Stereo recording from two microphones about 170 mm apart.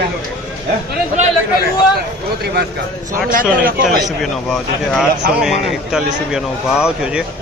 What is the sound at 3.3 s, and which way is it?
Speech, 55° right (ahead or behind).